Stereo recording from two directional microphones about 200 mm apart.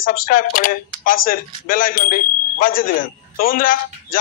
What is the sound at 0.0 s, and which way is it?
Speech, 45° left (ahead or behind).